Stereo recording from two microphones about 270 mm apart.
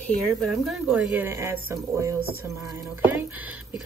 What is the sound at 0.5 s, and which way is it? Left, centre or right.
Speech, centre.